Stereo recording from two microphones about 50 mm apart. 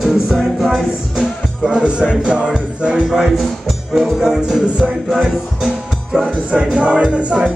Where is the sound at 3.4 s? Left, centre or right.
Centre.